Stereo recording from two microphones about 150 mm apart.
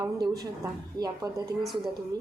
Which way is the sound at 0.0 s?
25° right (ahead or behind).